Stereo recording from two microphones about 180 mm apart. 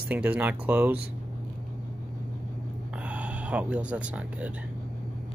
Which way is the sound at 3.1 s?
5° right (ahead or behind).